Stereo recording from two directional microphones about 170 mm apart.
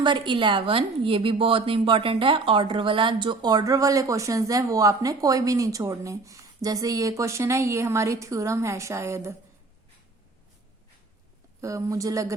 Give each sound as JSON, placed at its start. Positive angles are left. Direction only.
{"t": 0.0, "sound": "a woman's voice", "side_deg": -30}
{"t": 11.6, "sound": "a woman's voice", "side_deg": -20}